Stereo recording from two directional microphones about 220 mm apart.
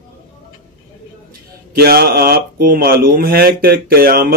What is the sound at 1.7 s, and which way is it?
Speech, 45° right (ahead or behind).